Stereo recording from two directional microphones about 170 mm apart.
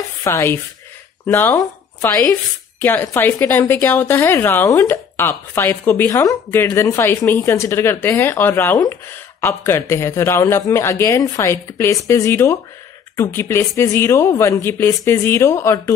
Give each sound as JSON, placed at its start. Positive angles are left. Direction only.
{"t": 0.2, "sound": "a woman's voice", "side_deg": 15}